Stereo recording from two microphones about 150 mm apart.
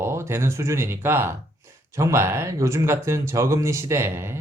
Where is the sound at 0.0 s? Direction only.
15° right (ahead or behind).